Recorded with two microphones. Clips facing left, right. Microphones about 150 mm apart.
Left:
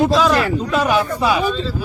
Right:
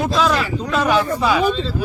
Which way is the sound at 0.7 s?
15° left (ahead or behind).